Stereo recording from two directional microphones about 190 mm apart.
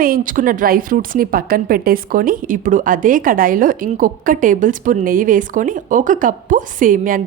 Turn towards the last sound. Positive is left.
turn(degrees=-45)  # may be behind; listen again after turning